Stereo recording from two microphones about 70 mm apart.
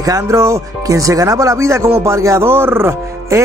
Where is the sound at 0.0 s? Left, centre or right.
Right.